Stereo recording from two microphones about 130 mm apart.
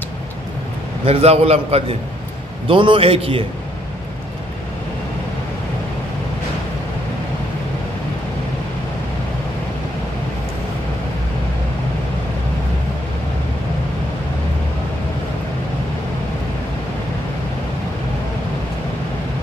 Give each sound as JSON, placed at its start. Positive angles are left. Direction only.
{"t": 1.0, "sound": "a man's voice", "side_deg": -50}